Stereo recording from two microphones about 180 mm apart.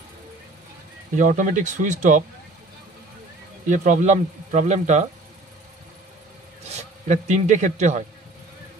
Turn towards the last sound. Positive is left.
turn(degrees=-40)  # may be behind; listen again after turning